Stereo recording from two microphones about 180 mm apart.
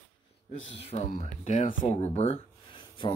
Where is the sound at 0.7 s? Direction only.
35° left (ahead or behind).